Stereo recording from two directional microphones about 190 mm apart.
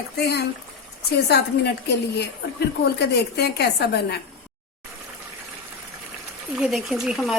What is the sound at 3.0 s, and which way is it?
A woman's voice, 60° left (ahead or behind).